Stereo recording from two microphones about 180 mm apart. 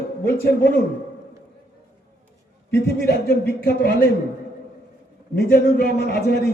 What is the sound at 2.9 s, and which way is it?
Speech, 65° left (ahead or behind).